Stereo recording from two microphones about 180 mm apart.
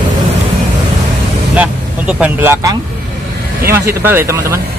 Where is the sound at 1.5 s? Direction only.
5° right (ahead or behind).